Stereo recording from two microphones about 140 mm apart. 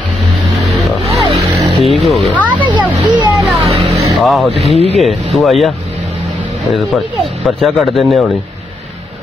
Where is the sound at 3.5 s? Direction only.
45° right (ahead or behind).